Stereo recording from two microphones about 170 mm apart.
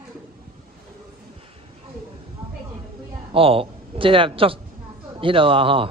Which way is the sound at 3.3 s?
35° right (ahead or behind).